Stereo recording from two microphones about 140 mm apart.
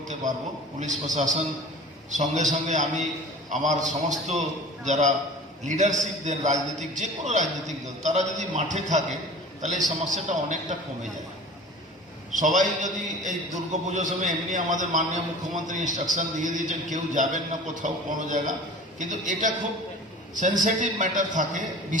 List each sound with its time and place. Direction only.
0.8 s a man's voice: 60° right (ahead or behind)
12.3 s a man's voice: 65° right (ahead or behind)